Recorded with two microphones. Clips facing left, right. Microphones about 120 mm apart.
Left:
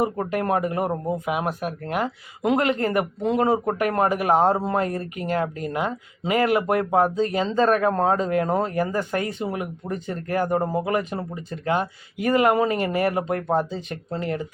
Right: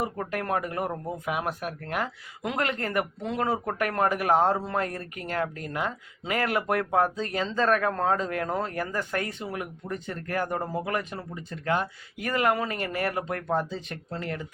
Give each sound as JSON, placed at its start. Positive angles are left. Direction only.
{"t": 0.0, "sound": "speech", "side_deg": 15}